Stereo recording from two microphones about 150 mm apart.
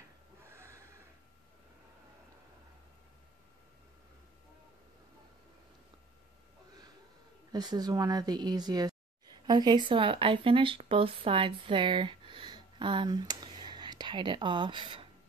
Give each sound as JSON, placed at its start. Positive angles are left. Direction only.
{"t": 0.5, "sound": "snort", "side_deg": -15}
{"t": 7.5, "sound": "speech", "side_deg": -25}